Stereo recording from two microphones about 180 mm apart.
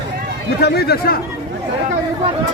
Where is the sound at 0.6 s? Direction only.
65° left (ahead or behind).